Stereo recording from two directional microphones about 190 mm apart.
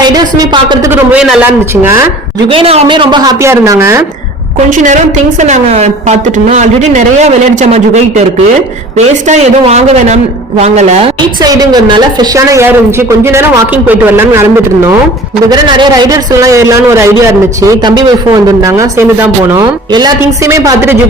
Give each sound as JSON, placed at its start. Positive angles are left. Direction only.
{"t": 0.0, "sound": "a woman's voice", "side_deg": -20}
{"t": 0.9, "sound": "a man's voice", "side_deg": -10}
{"t": 2.5, "sound": "speech", "side_deg": -30}
{"t": 4.7, "sound": "speech", "side_deg": -40}
{"t": 9.2, "sound": "speech", "side_deg": -35}
{"t": 11.3, "sound": "speech", "side_deg": -20}
{"t": 13.8, "sound": "a man's voice", "side_deg": -10}